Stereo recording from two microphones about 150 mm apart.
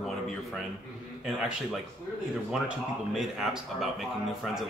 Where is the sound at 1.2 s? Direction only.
5° right (ahead or behind).